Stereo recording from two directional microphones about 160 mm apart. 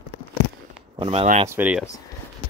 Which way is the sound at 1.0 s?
35° right (ahead or behind).